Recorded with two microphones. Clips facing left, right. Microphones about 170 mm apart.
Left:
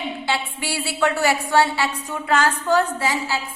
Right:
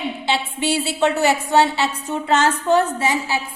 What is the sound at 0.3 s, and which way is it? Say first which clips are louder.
A woman's voice: right 6 dB; 20° right (ahead or behind).